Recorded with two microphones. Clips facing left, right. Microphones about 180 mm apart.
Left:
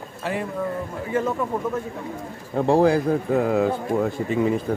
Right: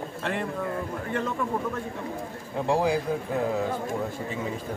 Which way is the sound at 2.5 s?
60° left (ahead or behind).